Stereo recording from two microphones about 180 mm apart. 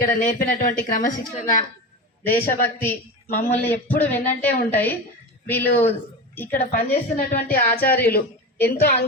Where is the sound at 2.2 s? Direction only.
10° left (ahead or behind).